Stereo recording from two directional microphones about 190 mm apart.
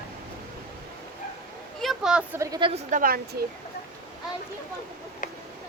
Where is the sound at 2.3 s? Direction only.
20° right (ahead or behind).